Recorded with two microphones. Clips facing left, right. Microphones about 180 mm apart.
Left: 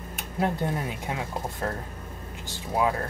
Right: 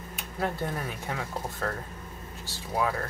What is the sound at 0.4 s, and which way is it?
Speech, 15° left (ahead or behind).